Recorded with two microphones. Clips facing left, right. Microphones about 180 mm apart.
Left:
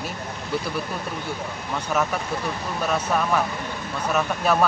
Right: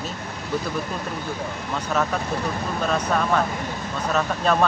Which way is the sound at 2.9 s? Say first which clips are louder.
Even; 10° left (ahead or behind).